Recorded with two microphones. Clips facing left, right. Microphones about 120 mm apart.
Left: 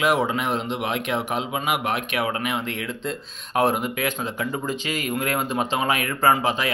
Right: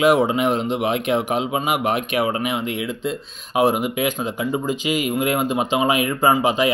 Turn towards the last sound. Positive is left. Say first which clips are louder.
# right 3 dB
turn(degrees=-15)  # may be behind; listen again after turning